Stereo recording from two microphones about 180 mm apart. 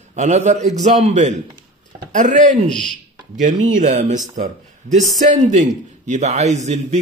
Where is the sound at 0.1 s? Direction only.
40° right (ahead or behind).